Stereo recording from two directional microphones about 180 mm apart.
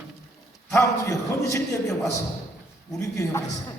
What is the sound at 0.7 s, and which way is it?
A man's voice, 15° left (ahead or behind).